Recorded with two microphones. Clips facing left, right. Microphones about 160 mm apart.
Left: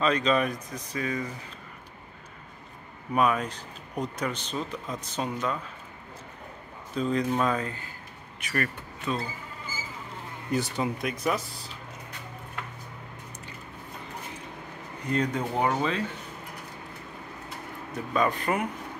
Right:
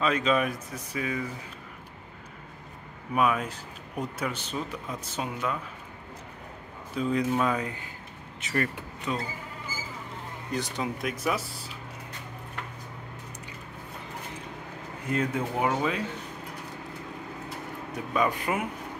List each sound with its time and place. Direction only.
0.0 s speech: 5° right (ahead or behind)
3.2 s speech: 5° right (ahead or behind)
7.0 s speech: 5° right (ahead or behind)
10.5 s speech: 5° left (ahead or behind)
15.0 s speech: 5° right (ahead or behind)
18.1 s speech: 10° right (ahead or behind)